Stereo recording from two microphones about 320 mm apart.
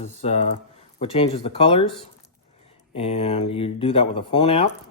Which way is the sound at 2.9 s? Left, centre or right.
Centre.